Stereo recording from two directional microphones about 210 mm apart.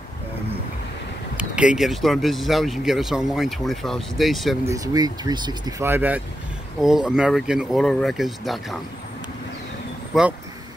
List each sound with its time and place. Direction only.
1.3 s speech: 5° right (ahead or behind)
4.6 s speech: 15° right (ahead or behind); by 8.7 s centre (ahead or behind)
10.1 s speech: centre (ahead or behind)